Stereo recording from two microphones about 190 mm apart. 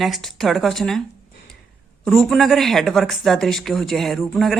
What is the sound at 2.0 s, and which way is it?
Speech, centre (ahead or behind).